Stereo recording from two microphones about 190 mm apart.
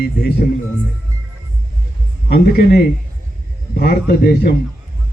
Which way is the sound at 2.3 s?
50° left (ahead or behind).